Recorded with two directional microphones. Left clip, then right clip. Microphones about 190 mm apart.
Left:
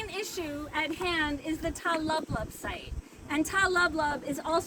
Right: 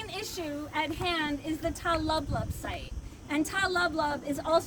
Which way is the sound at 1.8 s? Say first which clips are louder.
Even; 30° right (ahead or behind).